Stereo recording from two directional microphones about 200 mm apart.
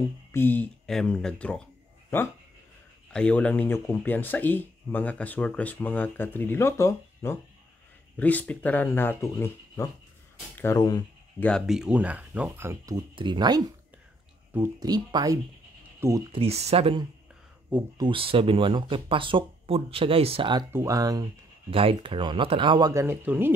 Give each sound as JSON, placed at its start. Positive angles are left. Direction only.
{"t": 0.3, "sound": "speech", "side_deg": 10}
{"t": 11.3, "sound": "speech", "side_deg": 5}
{"t": 16.3, "sound": "speech", "side_deg": -30}